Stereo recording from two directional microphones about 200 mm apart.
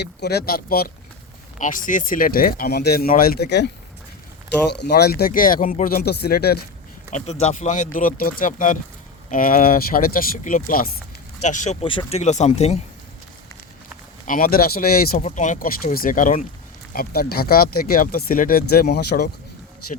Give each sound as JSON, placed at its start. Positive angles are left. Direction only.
{"t": 0.0, "sound": "speech", "side_deg": 55}
{"t": 4.7, "sound": "speech", "side_deg": 55}
{"t": 7.1, "sound": "speech", "side_deg": 35}
{"t": 14.3, "sound": "speech", "side_deg": 45}